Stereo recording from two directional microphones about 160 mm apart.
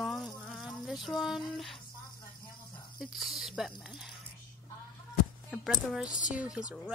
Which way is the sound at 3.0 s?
Centre (ahead or behind).